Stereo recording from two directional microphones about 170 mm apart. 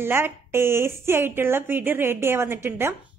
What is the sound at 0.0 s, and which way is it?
A woman's voice, 15° right (ahead or behind).